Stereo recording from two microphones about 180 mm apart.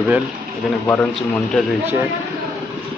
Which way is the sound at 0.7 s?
10° left (ahead or behind).